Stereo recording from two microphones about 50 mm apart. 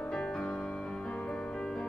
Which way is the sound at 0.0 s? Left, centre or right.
Centre.